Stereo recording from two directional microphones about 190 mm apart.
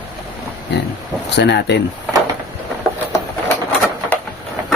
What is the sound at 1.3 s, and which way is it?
Speech, 65° left (ahead or behind).